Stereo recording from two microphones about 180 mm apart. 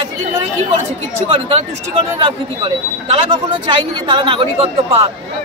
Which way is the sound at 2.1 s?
30° right (ahead or behind).